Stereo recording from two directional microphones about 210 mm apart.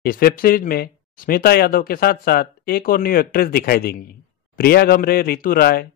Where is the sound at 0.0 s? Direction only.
45° left (ahead or behind).